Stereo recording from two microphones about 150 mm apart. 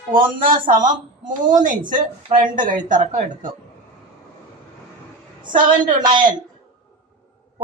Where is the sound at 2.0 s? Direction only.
60° right (ahead or behind).